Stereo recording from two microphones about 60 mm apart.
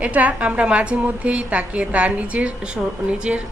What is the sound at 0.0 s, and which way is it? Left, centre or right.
A woman's voice, right.